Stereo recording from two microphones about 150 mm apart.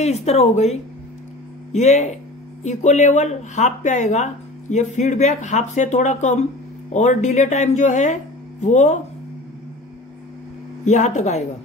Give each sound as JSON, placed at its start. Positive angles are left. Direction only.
{"t": 0.0, "sound": "speech", "side_deg": 45}
{"t": 10.9, "sound": "speech", "side_deg": 50}